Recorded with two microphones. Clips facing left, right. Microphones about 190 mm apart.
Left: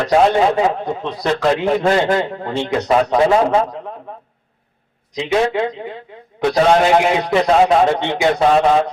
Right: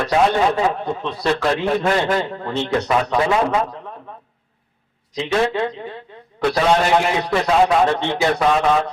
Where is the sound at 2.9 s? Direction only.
30° left (ahead or behind).